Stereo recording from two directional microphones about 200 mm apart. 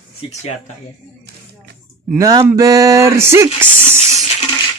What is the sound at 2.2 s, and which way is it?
Speech, 15° right (ahead or behind).